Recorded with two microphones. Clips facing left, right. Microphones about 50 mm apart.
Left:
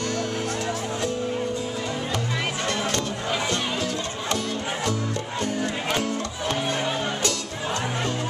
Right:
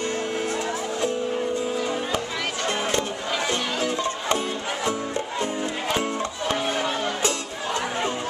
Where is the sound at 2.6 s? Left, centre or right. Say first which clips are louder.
Right 4 dB; right.